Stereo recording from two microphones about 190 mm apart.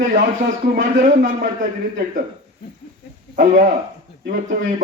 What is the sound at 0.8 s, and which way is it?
Speech, 40° right (ahead or behind).